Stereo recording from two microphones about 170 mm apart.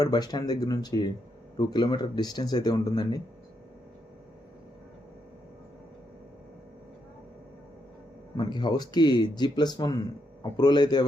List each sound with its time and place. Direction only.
0.0 s speech: 25° left (ahead or behind)
8.4 s speech: 25° left (ahead or behind)